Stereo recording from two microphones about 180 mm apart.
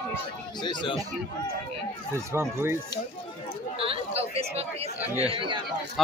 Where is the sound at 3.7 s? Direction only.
30° right (ahead or behind).